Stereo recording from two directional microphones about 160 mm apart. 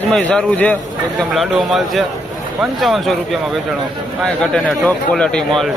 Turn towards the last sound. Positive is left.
turn(degrees=0)  # may be behind; listen again after turning